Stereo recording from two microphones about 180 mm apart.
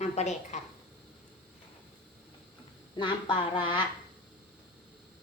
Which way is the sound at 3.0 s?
25° left (ahead or behind).